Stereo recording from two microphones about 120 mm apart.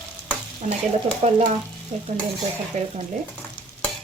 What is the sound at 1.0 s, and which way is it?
Stir, 60° right (ahead or behind).